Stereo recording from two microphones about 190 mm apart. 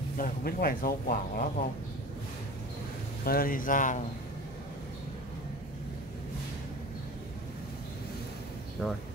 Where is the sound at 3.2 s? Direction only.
50° left (ahead or behind).